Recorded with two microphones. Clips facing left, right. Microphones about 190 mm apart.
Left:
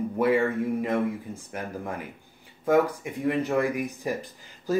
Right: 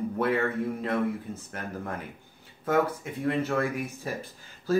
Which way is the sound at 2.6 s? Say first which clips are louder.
Left 3 dB; 15° left (ahead or behind).